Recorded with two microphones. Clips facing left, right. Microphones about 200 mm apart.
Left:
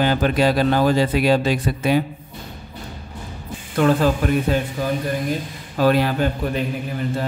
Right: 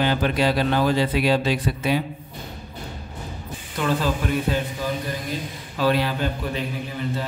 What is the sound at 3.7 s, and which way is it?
Speech, 55° left (ahead or behind).